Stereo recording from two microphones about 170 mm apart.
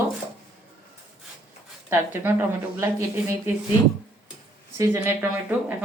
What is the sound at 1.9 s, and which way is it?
Speech, 15° right (ahead or behind).